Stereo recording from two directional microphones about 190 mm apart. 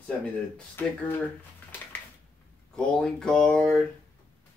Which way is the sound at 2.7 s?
5° left (ahead or behind).